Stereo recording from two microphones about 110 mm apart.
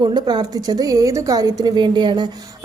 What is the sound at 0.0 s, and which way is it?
A woman's voice, 40° right (ahead or behind).